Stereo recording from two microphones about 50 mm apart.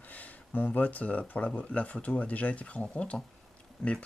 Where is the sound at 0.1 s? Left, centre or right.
Left.